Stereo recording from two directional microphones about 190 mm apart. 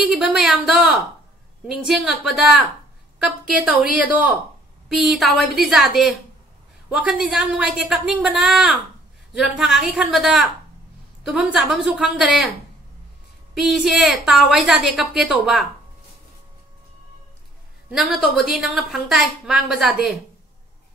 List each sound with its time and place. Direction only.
0.1 s a woman's voice: centre (ahead or behind)
13.6 s a woman's voice: centre (ahead or behind)
17.9 s a woman's voice: centre (ahead or behind)